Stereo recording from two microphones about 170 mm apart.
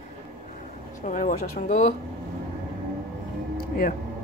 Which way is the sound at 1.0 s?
50° left (ahead or behind).